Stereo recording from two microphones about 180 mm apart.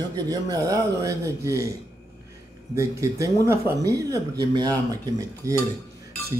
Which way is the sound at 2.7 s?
15° right (ahead or behind).